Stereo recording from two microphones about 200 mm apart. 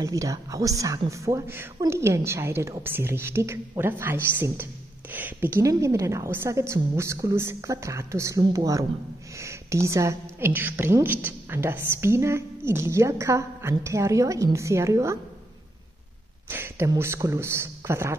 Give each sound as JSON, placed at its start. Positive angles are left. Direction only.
{"t": 0.0, "sound": "a woman's voice", "side_deg": -15}
{"t": 16.4, "sound": "a woman's voice", "side_deg": -10}